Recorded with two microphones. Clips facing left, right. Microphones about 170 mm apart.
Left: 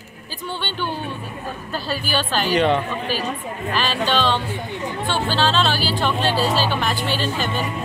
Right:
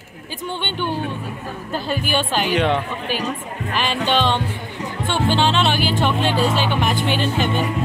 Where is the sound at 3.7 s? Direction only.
20° right (ahead or behind).